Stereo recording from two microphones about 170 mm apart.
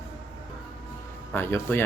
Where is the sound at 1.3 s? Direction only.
15° left (ahead or behind).